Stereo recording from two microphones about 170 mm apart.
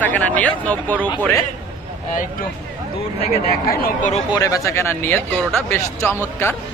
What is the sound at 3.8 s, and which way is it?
Speech, 45° left (ahead or behind).